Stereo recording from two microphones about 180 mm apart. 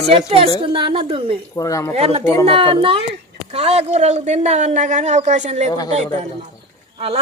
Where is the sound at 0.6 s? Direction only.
30° right (ahead or behind).